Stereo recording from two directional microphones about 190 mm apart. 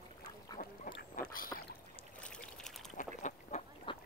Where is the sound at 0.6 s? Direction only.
45° left (ahead or behind).